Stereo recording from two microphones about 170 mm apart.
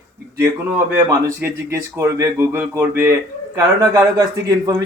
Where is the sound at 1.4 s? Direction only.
15° right (ahead or behind).